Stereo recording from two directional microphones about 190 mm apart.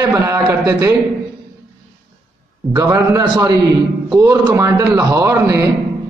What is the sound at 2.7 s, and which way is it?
A man's voice, 20° right (ahead or behind).